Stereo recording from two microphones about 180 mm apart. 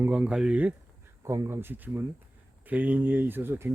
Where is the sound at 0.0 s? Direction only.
5° right (ahead or behind).